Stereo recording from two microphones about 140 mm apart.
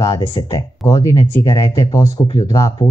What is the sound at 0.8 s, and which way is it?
Speech, 25° left (ahead or behind).